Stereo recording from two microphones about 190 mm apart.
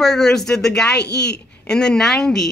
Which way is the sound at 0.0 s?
5° left (ahead or behind).